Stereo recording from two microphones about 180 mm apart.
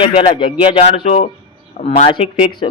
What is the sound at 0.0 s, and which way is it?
A man's voice, 30° left (ahead or behind).